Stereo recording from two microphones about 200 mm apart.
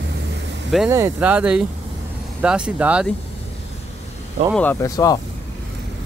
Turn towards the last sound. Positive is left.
turn(degrees=20)  # may be behind; listen again after turning